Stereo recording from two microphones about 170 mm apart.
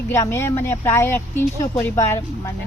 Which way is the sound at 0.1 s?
15° left (ahead or behind).